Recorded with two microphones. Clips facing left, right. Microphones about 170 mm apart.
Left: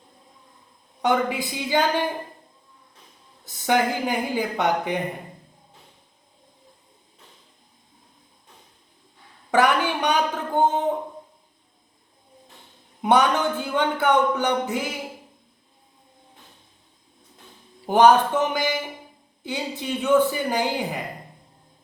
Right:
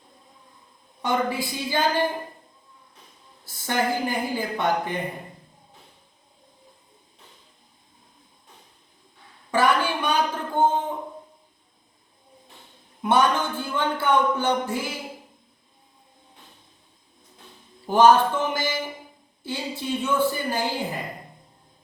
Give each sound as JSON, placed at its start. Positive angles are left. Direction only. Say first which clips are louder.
{"t": 1.0, "sound": "speech", "louder": "left 2 dB", "side_deg": 20}
{"t": 3.4, "sound": "speech", "louder": "left 4 dB", "side_deg": 20}
{"t": 9.6, "sound": "a sound", "louder": "left 2 dB", "side_deg": 15}
{"t": 13.0, "sound": "speech", "louder": "left 2 dB", "side_deg": 20}
{"t": 17.8, "sound": "speech", "louder": "left 1 dB", "side_deg": 15}